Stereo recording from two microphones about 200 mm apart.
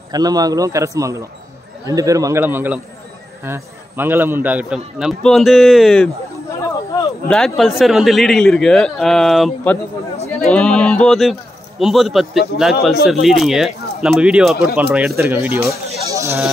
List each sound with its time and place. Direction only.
0.1 s a man's voice: 20° right (ahead or behind)